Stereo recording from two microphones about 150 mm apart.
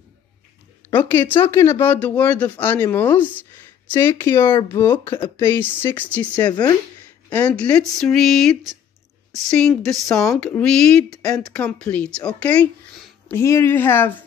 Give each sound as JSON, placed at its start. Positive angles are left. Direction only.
{"t": 0.8, "sound": "speech", "side_deg": 15}